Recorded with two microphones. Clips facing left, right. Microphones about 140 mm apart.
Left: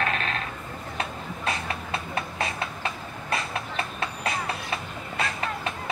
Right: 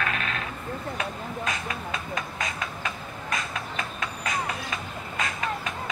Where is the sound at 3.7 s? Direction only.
35° left (ahead or behind).